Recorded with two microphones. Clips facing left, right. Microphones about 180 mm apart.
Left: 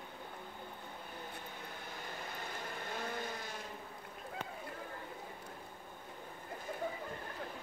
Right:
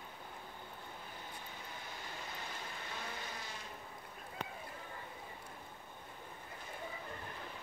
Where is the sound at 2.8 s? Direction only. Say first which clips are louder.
Left 7 dB; 50° left (ahead or behind).